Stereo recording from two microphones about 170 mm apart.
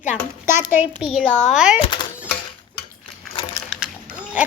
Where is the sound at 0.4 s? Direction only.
15° right (ahead or behind).